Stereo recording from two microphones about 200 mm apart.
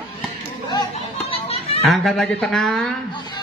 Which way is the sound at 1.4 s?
30° left (ahead or behind).